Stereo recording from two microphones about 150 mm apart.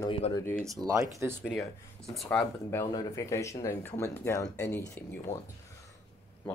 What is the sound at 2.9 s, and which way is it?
Speech, 25° left (ahead or behind).